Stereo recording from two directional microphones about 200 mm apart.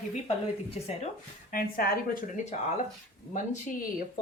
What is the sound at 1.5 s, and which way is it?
A woman's voice, 45° left (ahead or behind).